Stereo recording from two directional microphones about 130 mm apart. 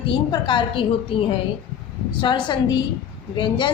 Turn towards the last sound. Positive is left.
turn(degrees=35)  # may be behind; listen again after turning